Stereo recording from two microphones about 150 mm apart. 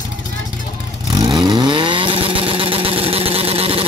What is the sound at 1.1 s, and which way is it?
Vehicle, 30° right (ahead or behind).